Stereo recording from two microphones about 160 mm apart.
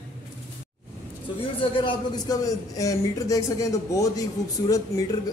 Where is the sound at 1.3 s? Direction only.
30° left (ahead or behind).